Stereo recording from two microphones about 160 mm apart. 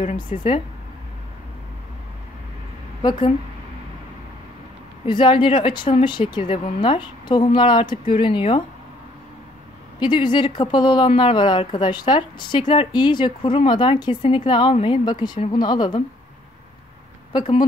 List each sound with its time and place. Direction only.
0.0 s speech: 55° left (ahead or behind)
3.0 s speech: 30° left (ahead or behind)
5.0 s a woman's voice: 30° left (ahead or behind)
9.9 s speech: 30° left (ahead or behind)